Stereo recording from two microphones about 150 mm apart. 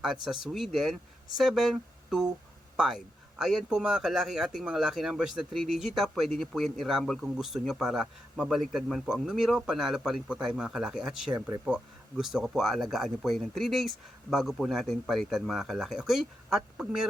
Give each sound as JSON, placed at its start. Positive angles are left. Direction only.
{"t": 0.0, "sound": "speech", "side_deg": 0}